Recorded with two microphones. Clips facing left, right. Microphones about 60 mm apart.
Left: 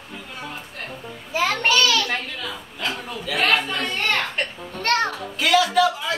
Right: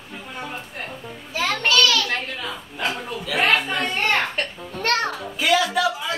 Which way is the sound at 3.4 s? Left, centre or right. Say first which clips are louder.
Right 1 dB; centre.